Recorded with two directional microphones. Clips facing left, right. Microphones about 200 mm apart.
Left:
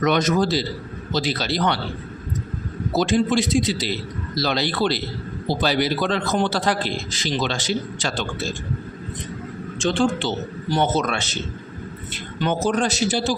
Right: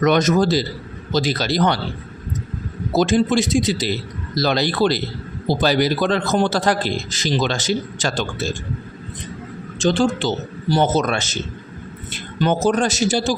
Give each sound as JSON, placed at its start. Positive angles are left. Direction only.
{"t": 0.0, "sound": "a man's voice", "side_deg": -45}
{"t": 2.9, "sound": "a man's voice", "side_deg": -45}
{"t": 9.7, "sound": "a man's voice", "side_deg": -35}
{"t": 12.4, "sound": "a man's voice", "side_deg": -40}